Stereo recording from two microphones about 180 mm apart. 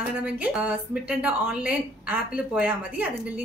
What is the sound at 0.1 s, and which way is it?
A woman's voice, 5° right (ahead or behind).